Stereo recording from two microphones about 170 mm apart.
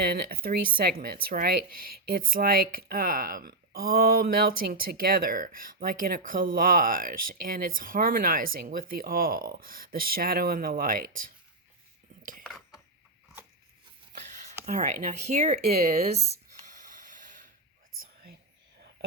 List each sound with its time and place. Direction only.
0.0 s speech: 60° right (ahead or behind)
12.4 s cutlery: centre (ahead or behind)
14.7 s speech: 45° right (ahead or behind)
17.0 s a sound: 50° right (ahead or behind)
18.0 s whispering: 65° right (ahead or behind)